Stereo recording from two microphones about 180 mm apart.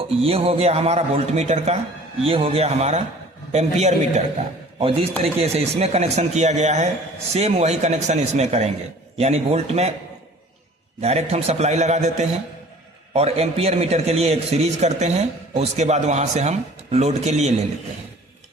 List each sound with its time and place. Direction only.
0.2 s a man's voice: 30° right (ahead or behind)
11.0 s a man's voice: 35° right (ahead or behind)